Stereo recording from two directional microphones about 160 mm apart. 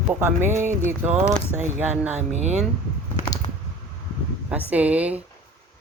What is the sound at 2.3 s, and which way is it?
Speech, 45° right (ahead or behind).